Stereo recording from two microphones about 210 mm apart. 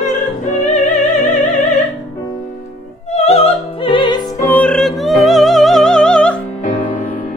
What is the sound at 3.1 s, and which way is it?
Music, 30° left (ahead or behind).